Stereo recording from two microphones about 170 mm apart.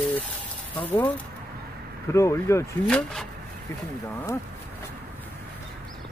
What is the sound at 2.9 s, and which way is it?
Speech, 5° left (ahead or behind).